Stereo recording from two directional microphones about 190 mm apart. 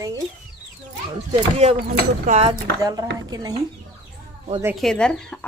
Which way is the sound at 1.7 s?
55° right (ahead or behind).